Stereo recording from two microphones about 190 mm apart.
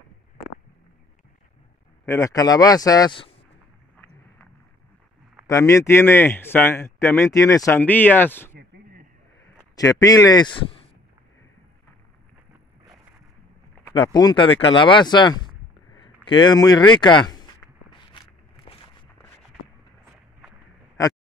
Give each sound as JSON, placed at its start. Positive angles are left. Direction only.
{"t": 2.0, "sound": "speech", "side_deg": 15}
{"t": 5.5, "sound": "speech", "side_deg": 15}
{"t": 9.8, "sound": "speech", "side_deg": 20}
{"t": 13.9, "sound": "speech", "side_deg": 20}
{"t": 17.3, "sound": "walk", "side_deg": 20}